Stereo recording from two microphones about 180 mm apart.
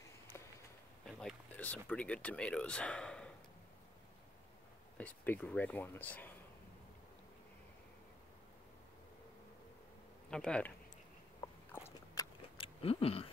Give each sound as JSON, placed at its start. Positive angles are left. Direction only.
{"t": 1.0, "sound": "speech", "side_deg": 5}
{"t": 4.9, "sound": "speech", "side_deg": 10}
{"t": 10.3, "sound": "speech", "side_deg": 5}
{"t": 11.7, "sound": "biting", "side_deg": 15}
{"t": 12.5, "sound": "a sound", "side_deg": 30}